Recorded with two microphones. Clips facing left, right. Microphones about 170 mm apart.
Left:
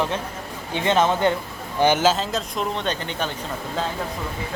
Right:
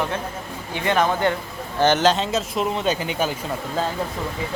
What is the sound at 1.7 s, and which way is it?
Speech, 10° left (ahead or behind).